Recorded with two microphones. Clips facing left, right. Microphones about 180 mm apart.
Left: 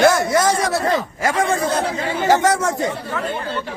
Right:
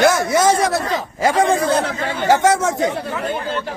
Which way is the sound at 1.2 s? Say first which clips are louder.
Right 4 dB; 35° right (ahead or behind).